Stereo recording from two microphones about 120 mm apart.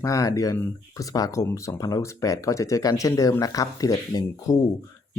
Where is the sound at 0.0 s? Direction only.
30° left (ahead or behind).